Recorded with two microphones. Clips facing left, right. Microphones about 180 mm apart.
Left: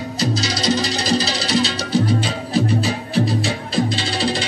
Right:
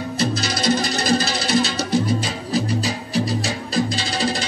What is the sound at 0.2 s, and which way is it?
Music, 55° right (ahead or behind).